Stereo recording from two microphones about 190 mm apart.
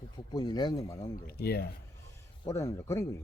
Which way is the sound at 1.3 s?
55° left (ahead or behind).